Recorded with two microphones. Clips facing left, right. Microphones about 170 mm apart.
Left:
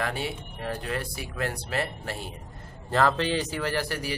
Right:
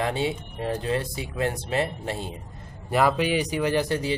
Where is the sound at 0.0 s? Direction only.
20° right (ahead or behind).